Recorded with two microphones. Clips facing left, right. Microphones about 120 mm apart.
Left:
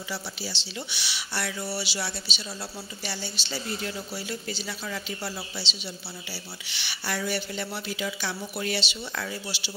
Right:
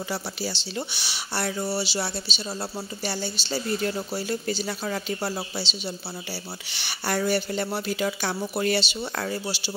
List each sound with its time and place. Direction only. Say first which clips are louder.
0.1 s speech: right 2 dB; 45° right (ahead or behind)